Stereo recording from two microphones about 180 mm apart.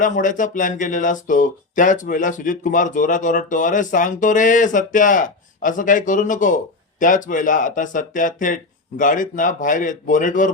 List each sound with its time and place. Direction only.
0.0 s speech: 45° left (ahead or behind)